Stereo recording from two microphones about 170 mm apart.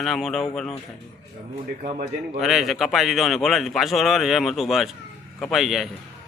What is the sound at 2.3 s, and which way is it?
A man's voice, centre (ahead or behind).